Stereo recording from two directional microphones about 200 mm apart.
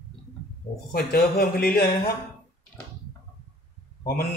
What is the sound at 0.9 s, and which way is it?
Speech, 50° left (ahead or behind).